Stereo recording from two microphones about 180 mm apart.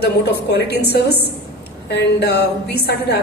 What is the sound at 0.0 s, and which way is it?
A woman's voice, 65° left (ahead or behind).